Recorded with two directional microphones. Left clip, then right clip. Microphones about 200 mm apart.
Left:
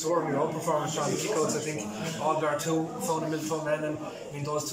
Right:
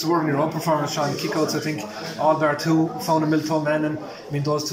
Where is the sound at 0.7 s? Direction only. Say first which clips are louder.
Right 7 dB; 55° right (ahead or behind).